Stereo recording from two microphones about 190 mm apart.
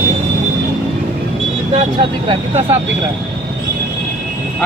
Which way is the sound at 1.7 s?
30° right (ahead or behind).